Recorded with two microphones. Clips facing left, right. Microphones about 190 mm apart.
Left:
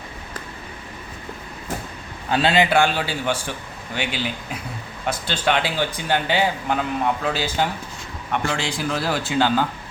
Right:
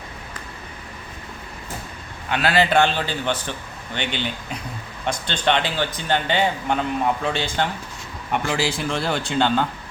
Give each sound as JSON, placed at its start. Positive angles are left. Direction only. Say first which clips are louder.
{"t": 2.3, "sound": "a man's voice", "louder": "left 1 dB", "side_deg": 25}
{"t": 2.6, "sound": "speech", "louder": "even", "side_deg": 10}
{"t": 8.3, "sound": "a man's voice", "louder": "right 2 dB", "side_deg": -5}